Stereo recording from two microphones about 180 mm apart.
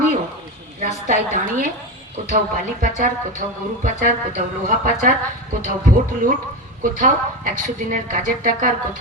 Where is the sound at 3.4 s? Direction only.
45° right (ahead or behind).